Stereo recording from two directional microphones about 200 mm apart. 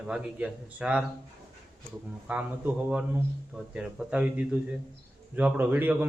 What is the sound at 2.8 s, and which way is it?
A man's voice, 5° right (ahead or behind).